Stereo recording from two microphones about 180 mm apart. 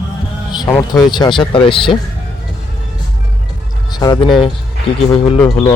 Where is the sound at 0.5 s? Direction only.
20° left (ahead or behind).